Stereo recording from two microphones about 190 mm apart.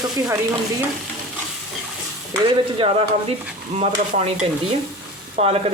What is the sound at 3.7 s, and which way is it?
Stir, 35° right (ahead or behind).